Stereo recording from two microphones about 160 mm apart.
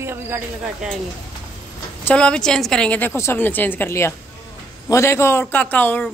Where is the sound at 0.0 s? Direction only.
15° right (ahead or behind).